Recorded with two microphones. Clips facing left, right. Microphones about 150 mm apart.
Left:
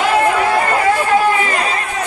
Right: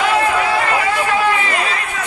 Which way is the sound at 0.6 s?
45° left (ahead or behind).